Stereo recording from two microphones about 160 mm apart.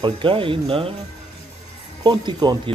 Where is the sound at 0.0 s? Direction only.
35° right (ahead or behind).